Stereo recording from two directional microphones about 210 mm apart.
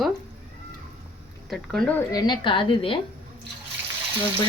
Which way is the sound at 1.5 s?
Centre (ahead or behind).